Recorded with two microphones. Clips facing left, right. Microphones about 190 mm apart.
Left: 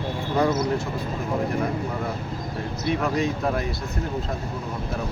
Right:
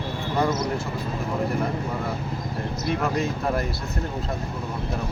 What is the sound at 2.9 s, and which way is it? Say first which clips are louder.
Speech: left 2 dB; 5° right (ahead or behind).